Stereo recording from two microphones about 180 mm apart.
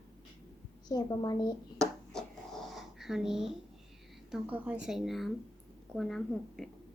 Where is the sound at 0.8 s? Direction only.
20° left (ahead or behind).